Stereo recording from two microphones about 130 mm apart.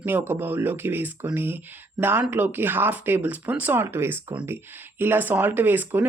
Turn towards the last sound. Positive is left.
turn(degrees=-15)  # may be behind; listen again after turning